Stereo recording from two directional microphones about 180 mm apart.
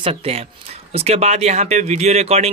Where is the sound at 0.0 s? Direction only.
30° right (ahead or behind).